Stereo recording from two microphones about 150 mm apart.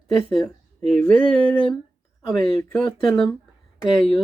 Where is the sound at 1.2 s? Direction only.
35° left (ahead or behind).